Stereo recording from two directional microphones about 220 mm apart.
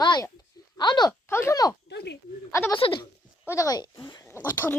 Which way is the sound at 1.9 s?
50° left (ahead or behind).